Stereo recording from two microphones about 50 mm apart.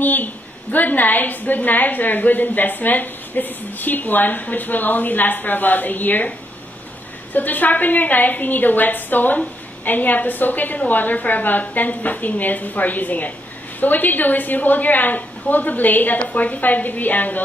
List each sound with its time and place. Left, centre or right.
0.0 s a woman's voice: left
7.3 s a woman's voice: left